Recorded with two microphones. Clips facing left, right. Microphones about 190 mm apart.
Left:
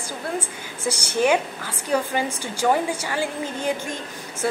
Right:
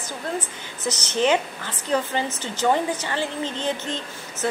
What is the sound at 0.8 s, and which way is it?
A woman's voice, 10° left (ahead or behind).